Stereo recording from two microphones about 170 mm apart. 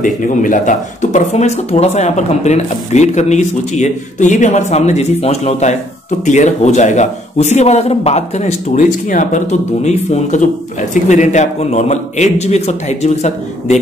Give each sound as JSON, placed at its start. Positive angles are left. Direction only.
{"t": 0.0, "sound": "a man's voice", "side_deg": 50}